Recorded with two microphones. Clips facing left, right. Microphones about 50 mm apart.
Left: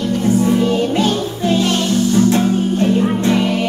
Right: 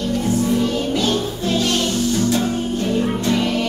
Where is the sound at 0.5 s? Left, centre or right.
Left.